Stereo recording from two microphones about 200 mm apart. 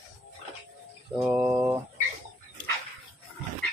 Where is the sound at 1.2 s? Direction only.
10° right (ahead or behind).